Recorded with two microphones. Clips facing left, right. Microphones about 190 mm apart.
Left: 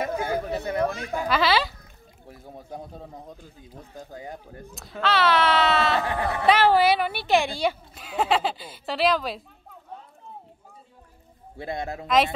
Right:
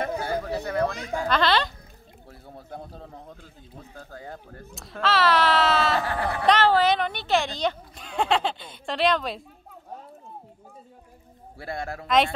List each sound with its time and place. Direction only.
0.2 s a sound: 20° left (ahead or behind)
1.1 s a woman's voice: 10° left (ahead or behind)
4.7 s a woman's voice: centre (ahead or behind)
6.0 s a man's voice: 20° left (ahead or behind); by 9.4 s centre (ahead or behind)
11.5 s a man's voice: 20° left (ahead or behind)
12.1 s a woman's voice: centre (ahead or behind)